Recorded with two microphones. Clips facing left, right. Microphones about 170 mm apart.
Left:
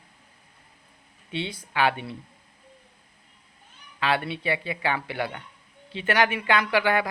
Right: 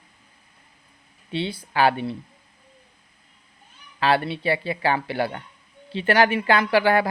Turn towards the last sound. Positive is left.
turn(degrees=-35)  # may be behind; listen again after turning